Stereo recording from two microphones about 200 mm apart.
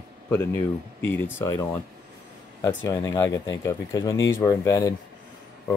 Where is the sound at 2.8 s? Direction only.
15° left (ahead or behind).